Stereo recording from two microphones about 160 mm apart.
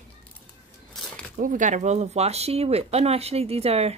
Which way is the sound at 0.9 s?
5° left (ahead or behind).